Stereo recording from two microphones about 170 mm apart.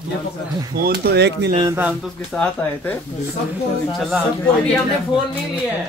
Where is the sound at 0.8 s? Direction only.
65° right (ahead or behind); by 1.4 s 85° right.